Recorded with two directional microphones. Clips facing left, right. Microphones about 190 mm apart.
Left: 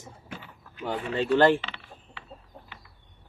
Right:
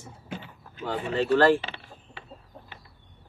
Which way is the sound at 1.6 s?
40° right (ahead or behind).